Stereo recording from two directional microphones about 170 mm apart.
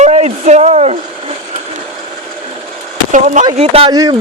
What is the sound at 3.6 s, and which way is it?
Speech, 35° right (ahead or behind).